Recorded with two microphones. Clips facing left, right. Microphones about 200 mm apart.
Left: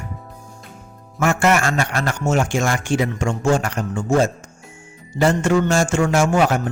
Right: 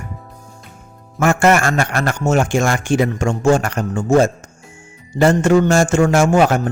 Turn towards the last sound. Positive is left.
turn(degrees=-45)  # may be behind; listen again after turning